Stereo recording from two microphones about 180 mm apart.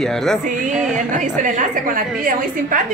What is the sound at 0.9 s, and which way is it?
A woman's voice, 45° right (ahead or behind).